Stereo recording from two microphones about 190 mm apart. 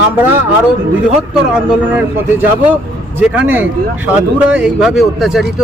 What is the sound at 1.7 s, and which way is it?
Speech, 10° right (ahead or behind).